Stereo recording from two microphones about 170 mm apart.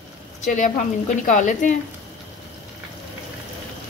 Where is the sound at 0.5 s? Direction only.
50° left (ahead or behind).